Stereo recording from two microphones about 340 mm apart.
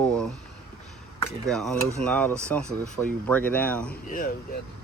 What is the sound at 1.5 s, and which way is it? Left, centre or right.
Speech, centre.